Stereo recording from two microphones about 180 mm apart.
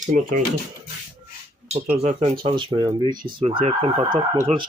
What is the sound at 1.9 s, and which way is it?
Speech, 40° right (ahead or behind).